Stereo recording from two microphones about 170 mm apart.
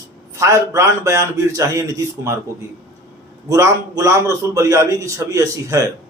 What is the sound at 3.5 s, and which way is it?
A man's voice, 20° right (ahead or behind).